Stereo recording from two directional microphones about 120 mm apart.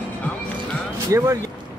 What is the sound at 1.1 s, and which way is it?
Speech, 25° right (ahead or behind).